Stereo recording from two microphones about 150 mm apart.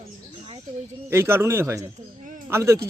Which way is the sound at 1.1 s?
15° right (ahead or behind).